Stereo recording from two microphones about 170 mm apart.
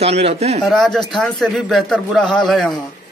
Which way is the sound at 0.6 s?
Centre (ahead or behind).